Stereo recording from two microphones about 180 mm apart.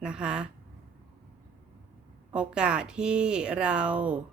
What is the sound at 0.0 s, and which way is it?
Speech, 5° right (ahead or behind).